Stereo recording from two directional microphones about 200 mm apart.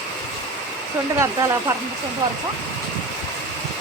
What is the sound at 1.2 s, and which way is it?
Speech, 15° right (ahead or behind).